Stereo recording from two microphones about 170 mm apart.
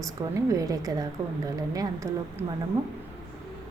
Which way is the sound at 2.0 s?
20° right (ahead or behind).